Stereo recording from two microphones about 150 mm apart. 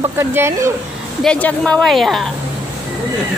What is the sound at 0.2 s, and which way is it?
Speech, 15° right (ahead or behind).